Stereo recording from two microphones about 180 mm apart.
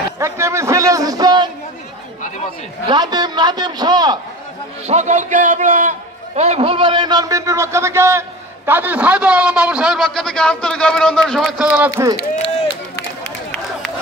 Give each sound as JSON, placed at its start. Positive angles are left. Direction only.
{"t": 0.2, "sound": "a sound", "side_deg": -15}
{"t": 2.9, "sound": "a man's voice", "side_deg": -25}
{"t": 4.8, "sound": "a man's voice", "side_deg": -40}
{"t": 11.7, "sound": "a man's voice", "side_deg": -10}